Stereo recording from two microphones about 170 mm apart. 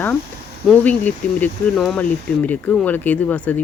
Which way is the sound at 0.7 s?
10° left (ahead or behind).